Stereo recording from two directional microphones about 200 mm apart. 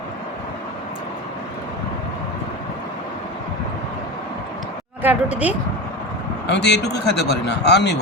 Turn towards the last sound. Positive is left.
turn(degrees=60)  # may be behind; listen again after turning